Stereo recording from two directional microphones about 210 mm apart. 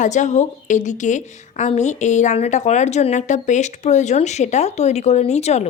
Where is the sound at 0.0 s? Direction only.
35° left (ahead or behind).